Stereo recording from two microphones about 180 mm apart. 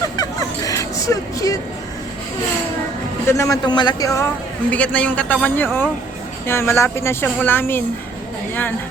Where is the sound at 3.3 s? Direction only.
15° left (ahead or behind).